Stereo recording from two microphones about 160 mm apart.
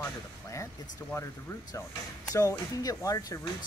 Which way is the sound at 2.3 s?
20° left (ahead or behind).